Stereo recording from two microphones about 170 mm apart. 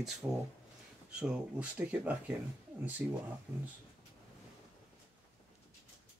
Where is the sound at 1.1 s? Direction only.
5° right (ahead or behind).